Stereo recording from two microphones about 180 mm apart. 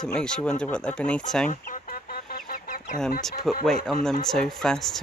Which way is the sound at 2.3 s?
50° left (ahead or behind).